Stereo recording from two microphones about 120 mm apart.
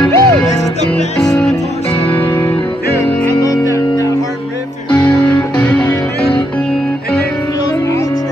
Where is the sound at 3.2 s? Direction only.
30° left (ahead or behind).